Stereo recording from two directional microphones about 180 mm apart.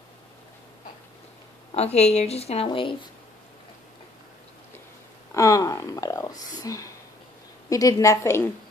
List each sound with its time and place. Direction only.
1.7 s a woman's voice: 35° left (ahead or behind)
5.3 s a sound: 20° left (ahead or behind)
7.7 s a woman's voice: 20° left (ahead or behind)